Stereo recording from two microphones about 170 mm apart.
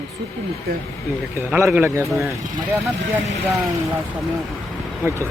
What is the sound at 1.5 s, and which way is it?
Speech, 5° right (ahead or behind).